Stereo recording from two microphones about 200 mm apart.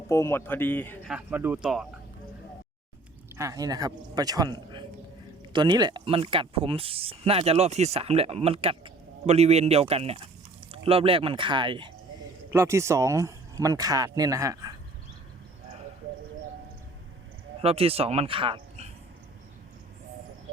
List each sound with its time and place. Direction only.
0.1 s a man's voice: 10° left (ahead or behind)
1.0 s speech: 5° right (ahead or behind)
3.3 s speech: 15° right (ahead or behind)
12.5 s speech: 15° right (ahead or behind)
17.6 s speech: 30° right (ahead or behind)